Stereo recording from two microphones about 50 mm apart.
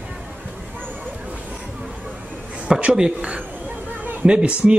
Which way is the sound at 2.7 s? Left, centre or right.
Right.